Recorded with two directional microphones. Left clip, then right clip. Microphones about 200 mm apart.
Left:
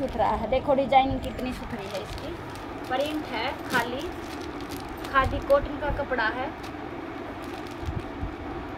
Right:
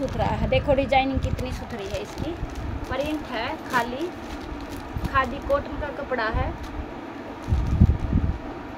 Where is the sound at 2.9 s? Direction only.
40° right (ahead or behind).